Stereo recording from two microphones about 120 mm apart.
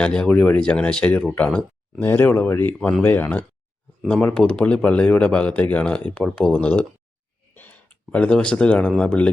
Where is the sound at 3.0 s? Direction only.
15° left (ahead or behind).